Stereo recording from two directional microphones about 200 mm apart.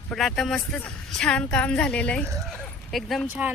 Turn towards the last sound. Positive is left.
turn(degrees=-5)  # may be behind; listen again after turning